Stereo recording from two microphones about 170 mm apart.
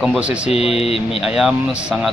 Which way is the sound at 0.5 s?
35° left (ahead or behind).